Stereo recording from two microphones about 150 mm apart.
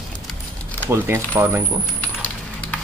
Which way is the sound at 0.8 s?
15° right (ahead or behind).